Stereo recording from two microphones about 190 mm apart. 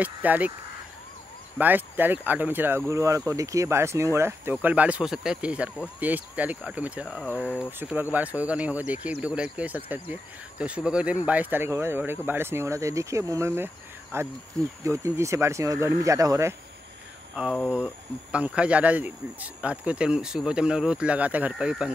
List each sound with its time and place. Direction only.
0.0 s speech: 10° right (ahead or behind)
1.6 s speech: 10° right (ahead or behind)
17.4 s speech: centre (ahead or behind)